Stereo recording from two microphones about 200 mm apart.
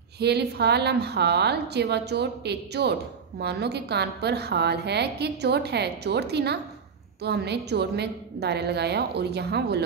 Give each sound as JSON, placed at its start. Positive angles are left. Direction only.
{"t": 0.2, "sound": "a woman's voice", "side_deg": -55}